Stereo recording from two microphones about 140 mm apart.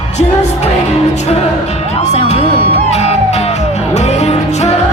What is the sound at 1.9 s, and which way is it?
Music, 50° left (ahead or behind).